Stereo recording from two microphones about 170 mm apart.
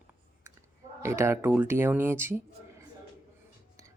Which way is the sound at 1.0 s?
15° right (ahead or behind).